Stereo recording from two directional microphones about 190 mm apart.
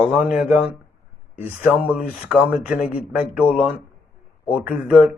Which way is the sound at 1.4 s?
10° right (ahead or behind).